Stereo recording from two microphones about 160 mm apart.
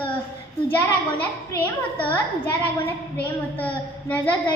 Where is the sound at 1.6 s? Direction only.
10° left (ahead or behind).